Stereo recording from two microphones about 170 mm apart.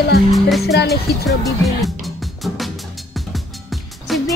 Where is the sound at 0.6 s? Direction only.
75° left (ahead or behind).